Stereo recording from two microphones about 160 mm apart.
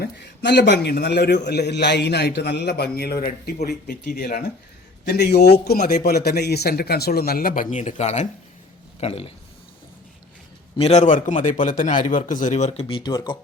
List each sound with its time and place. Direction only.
0.0 s a man's voice: 90° left
4.0 s speech: 55° left (ahead or behind)
5.0 s a man's voice: 90° left
5.9 s speech: 75° left (ahead or behind); by 9.3 s 40° left (ahead or behind)
10.8 s a man's voice: 40° left (ahead or behind)